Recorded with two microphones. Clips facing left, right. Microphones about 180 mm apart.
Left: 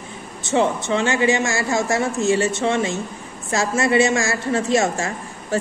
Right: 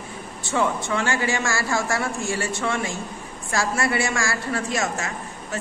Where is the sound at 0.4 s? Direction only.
20° left (ahead or behind).